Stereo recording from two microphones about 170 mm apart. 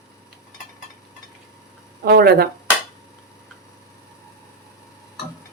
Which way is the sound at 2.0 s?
65° right (ahead or behind).